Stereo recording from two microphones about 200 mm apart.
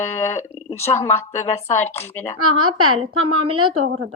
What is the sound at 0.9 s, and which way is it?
Speech, 10° left (ahead or behind).